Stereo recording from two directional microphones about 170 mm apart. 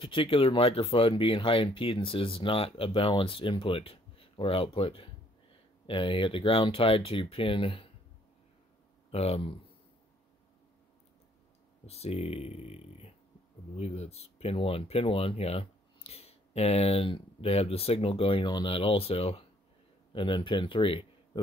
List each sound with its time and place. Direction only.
0.0 s speech: 30° left (ahead or behind)
9.1 s speech: 35° left (ahead or behind)
11.8 s speech: 35° left (ahead or behind)